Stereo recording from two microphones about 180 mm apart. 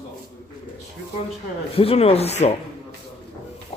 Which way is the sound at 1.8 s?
35° left (ahead or behind).